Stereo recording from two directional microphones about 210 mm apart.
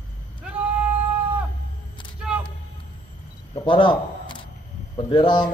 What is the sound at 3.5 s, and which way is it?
Single-lens reflex camera, 25° left (ahead or behind).